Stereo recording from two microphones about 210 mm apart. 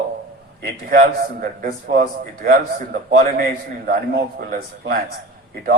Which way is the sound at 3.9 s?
40° right (ahead or behind).